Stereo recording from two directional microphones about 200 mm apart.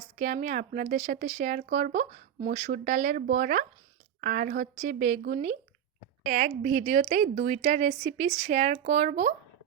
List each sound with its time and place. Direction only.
0.2 s speech: 40° right (ahead or behind)